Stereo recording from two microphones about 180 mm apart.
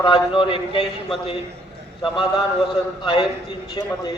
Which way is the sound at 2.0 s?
25° left (ahead or behind).